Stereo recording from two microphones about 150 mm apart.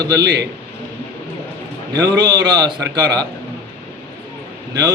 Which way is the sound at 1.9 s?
25° right (ahead or behind).